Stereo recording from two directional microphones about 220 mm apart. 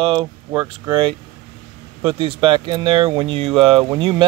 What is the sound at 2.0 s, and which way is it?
Speech, 25° right (ahead or behind).